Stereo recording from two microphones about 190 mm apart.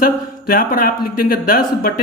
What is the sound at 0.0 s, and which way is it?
Speech, 50° left (ahead or behind).